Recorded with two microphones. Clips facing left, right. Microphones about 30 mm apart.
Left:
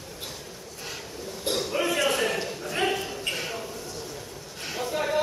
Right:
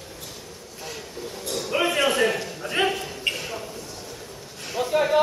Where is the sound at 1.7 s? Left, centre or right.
Right.